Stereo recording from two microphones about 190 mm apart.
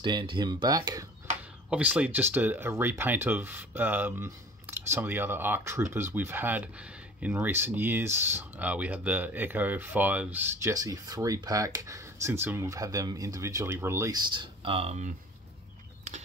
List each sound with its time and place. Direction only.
0.0 s speech: 25° right (ahead or behind)
1.7 s speech: 5° right (ahead or behind); by 15.1 s 35° right (ahead or behind)